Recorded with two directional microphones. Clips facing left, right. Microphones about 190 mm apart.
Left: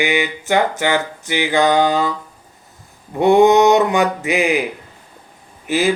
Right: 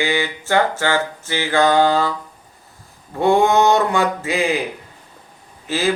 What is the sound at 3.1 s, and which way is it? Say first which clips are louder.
Speech: left 4 dB; 20° left (ahead or behind).